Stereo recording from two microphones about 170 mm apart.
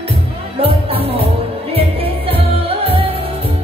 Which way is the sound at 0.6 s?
35° right (ahead or behind).